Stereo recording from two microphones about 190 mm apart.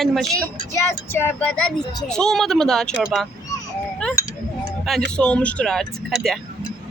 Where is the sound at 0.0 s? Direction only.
Centre (ahead or behind).